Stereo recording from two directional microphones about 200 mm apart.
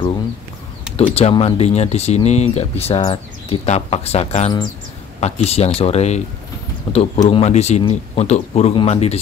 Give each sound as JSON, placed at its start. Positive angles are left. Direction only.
{"t": 0.9, "sound": "speech", "side_deg": 30}